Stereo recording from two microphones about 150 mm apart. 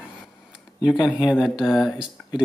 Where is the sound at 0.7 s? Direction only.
30° left (ahead or behind).